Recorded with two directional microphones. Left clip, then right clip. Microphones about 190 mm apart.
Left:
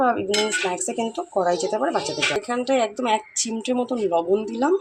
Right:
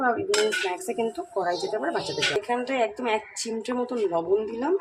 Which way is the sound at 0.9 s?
20° left (ahead or behind).